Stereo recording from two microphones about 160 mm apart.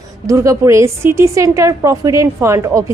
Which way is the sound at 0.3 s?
20° right (ahead or behind).